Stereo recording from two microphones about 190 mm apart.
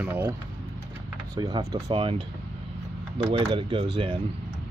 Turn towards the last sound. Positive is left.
turn(degrees=-25)  # may be behind; listen again after turning